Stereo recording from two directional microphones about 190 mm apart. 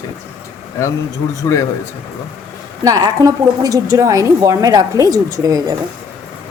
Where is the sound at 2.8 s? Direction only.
20° right (ahead or behind).